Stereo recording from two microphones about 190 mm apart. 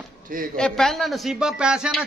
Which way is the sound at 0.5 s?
5° left (ahead or behind).